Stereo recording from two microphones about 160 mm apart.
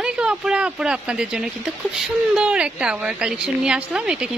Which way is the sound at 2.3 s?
5° right (ahead or behind).